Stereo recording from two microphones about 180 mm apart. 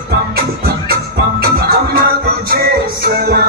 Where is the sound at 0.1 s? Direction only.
55° right (ahead or behind).